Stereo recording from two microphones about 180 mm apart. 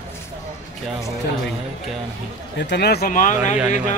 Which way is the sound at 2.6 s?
70° left (ahead or behind).